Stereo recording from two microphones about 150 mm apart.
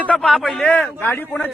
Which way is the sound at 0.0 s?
10° left (ahead or behind).